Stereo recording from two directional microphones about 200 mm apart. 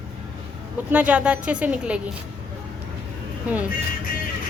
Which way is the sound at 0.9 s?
5° right (ahead or behind).